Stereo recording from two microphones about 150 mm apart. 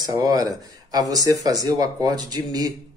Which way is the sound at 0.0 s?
25° right (ahead or behind).